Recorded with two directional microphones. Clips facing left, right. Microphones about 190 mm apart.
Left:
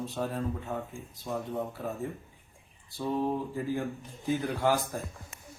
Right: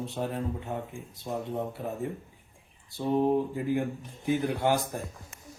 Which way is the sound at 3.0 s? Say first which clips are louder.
Right 5 dB; 20° right (ahead or behind).